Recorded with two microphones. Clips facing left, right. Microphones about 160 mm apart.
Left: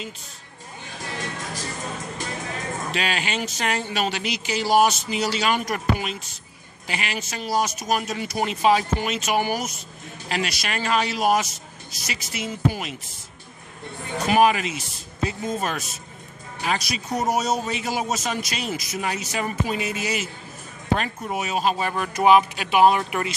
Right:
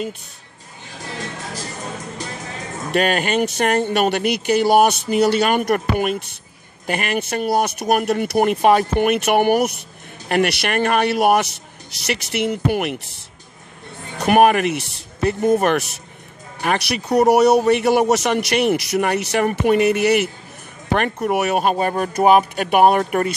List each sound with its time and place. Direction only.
2.9 s speech: 50° right (ahead or behind)
14.2 s speech: 60° right (ahead or behind)